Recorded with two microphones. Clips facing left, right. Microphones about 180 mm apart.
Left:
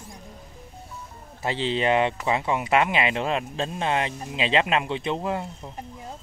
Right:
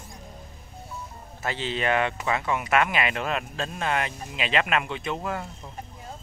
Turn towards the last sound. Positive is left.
turn(degrees=25)  # may be behind; listen again after turning